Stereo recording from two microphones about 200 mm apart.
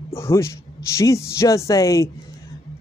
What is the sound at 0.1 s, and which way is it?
A man's voice, 15° left (ahead or behind).